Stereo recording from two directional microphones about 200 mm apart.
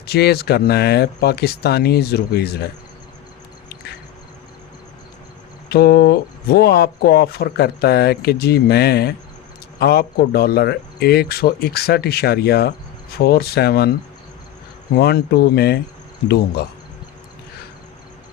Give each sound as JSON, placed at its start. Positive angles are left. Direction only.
{"t": 0.0, "sound": "speech", "side_deg": 50}
{"t": 5.6, "sound": "speech", "side_deg": 50}
{"t": 14.9, "sound": "speech", "side_deg": 55}